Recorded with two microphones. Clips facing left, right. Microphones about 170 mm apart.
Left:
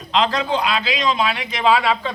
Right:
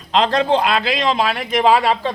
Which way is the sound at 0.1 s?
45° right (ahead or behind).